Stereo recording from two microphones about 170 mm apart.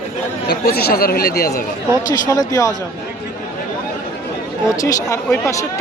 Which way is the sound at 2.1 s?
20° left (ahead or behind).